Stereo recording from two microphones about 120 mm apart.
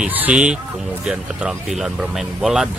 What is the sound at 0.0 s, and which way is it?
Speech, 10° right (ahead or behind).